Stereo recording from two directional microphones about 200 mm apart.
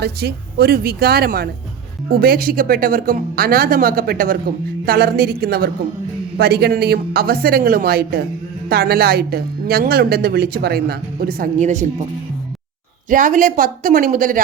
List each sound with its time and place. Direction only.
0.0 s speech: 55° right (ahead or behind); by 12.0 s 35° right (ahead or behind)
13.1 s speech: 40° right (ahead or behind)